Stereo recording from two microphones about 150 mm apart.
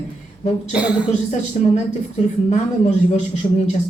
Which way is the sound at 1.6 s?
55° left (ahead or behind).